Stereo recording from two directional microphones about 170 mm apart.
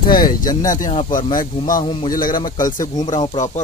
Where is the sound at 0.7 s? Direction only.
55° left (ahead or behind).